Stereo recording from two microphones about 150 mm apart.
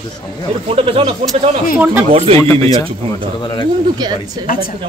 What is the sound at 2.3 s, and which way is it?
Speech, 20° left (ahead or behind).